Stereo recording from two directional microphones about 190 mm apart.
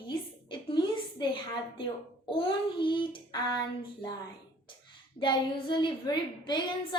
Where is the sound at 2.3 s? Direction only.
25° left (ahead or behind).